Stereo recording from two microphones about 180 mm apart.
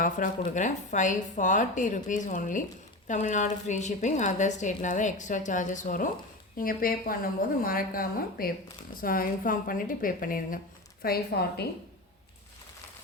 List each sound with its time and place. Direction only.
0.0 s a woman's voice: 45° left (ahead or behind)